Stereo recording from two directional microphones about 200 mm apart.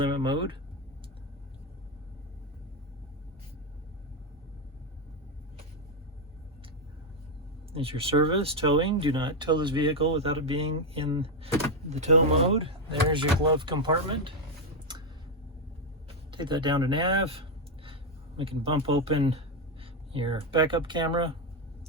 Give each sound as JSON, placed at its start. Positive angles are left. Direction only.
{"t": 0.0, "sound": "speech", "side_deg": -25}
{"t": 7.7, "sound": "speech", "side_deg": -30}
{"t": 14.9, "sound": "a sound", "side_deg": -20}
{"t": 16.3, "sound": "speech", "side_deg": -25}